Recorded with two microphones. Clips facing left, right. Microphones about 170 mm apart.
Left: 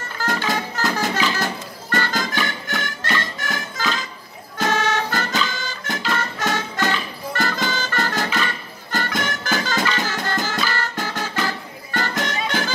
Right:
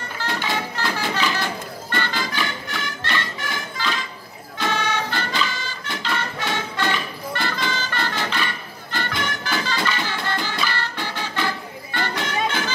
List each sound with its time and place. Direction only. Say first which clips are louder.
0.2 s music: left 3 dB; 45° left (ahead or behind)